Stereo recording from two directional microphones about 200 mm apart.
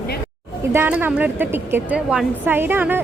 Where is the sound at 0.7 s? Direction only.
10° right (ahead or behind).